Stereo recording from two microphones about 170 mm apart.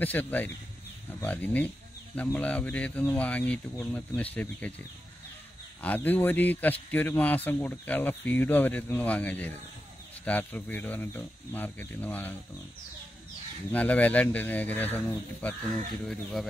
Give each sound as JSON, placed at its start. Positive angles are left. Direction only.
{"t": 0.0, "sound": "a man's voice", "side_deg": 10}
{"t": 5.8, "sound": "a man's voice", "side_deg": 10}
{"t": 13.7, "sound": "a man's voice", "side_deg": 10}